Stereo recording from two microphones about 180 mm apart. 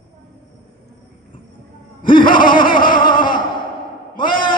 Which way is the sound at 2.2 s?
50° left (ahead or behind).